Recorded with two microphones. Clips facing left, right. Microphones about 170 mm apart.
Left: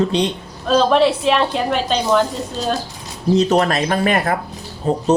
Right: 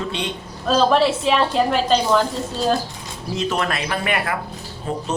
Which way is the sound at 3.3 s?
40° left (ahead or behind).